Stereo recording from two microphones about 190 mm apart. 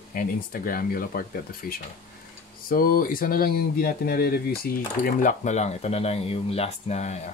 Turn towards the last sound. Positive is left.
turn(degrees=35)  # may be behind; listen again after turning